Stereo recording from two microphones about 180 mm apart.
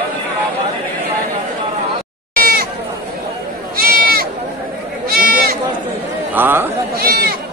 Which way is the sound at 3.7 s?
55° right (ahead or behind).